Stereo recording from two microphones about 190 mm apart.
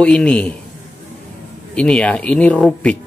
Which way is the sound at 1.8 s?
5° left (ahead or behind).